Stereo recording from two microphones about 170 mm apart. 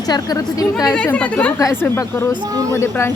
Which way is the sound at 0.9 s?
5° left (ahead or behind).